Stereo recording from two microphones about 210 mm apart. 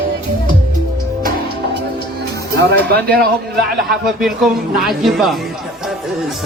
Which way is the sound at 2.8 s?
50° right (ahead or behind).